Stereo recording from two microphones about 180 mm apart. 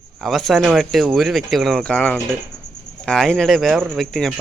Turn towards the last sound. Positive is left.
turn(degrees=0)  # may be behind; listen again after turning